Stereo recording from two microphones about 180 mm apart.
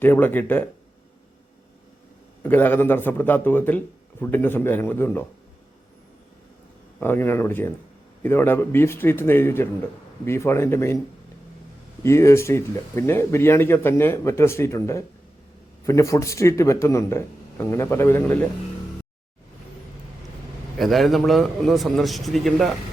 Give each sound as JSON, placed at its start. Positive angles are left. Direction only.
{"t": 0.0, "sound": "a man's voice", "side_deg": 10}
{"t": 2.4, "sound": "a man's voice", "side_deg": 10}
{"t": 7.0, "sound": "a man's voice", "side_deg": 10}
{"t": 12.0, "sound": "a man's voice", "side_deg": 15}
{"t": 20.7, "sound": "a man's voice", "side_deg": 0}